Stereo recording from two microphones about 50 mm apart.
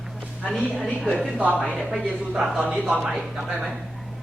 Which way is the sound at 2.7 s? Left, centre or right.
Centre.